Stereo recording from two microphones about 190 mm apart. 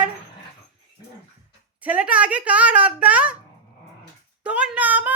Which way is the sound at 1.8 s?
5° right (ahead or behind).